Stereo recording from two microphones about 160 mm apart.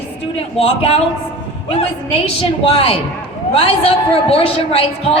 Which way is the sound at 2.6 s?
35° left (ahead or behind).